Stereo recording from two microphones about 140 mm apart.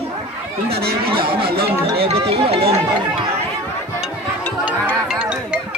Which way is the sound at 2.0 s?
45° right (ahead or behind).